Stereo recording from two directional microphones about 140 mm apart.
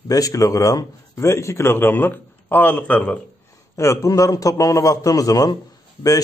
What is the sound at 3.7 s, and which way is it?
A man's voice, 20° left (ahead or behind).